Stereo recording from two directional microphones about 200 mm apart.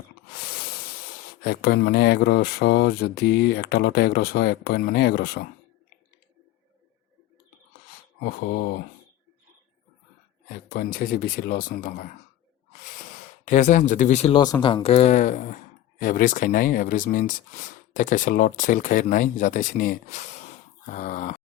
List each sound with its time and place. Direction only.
1.5 s speech: 55° left (ahead or behind)
8.2 s speech: 55° left (ahead or behind)
10.5 s speech: 50° left (ahead or behind)
20.8 s grunt: 40° left (ahead or behind)